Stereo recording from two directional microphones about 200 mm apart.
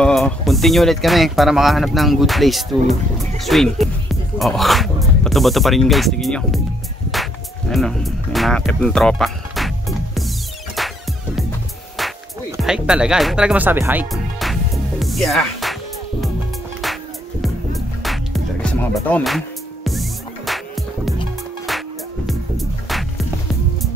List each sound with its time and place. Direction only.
0.0 s speech: centre (ahead or behind)
7.7 s speech: centre (ahead or behind)
10.8 s music: centre (ahead or behind)
12.0 s music: centre (ahead or behind)
12.6 s speech: 5° right (ahead or behind)
14.1 s music: centre (ahead or behind)